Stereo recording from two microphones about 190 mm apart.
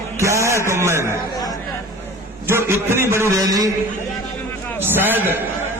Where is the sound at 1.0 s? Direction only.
15° left (ahead or behind).